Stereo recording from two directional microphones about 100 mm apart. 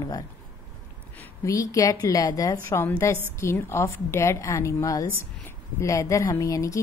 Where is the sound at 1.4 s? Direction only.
30° left (ahead or behind).